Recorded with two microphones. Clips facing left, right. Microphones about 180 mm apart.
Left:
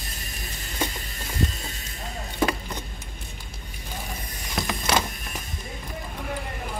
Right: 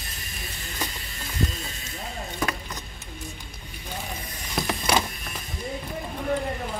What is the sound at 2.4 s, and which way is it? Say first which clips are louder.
Keys jangling: left 6 dB; 25° left (ahead or behind).